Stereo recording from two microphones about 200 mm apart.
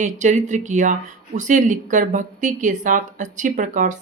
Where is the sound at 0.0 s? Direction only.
35° right (ahead or behind).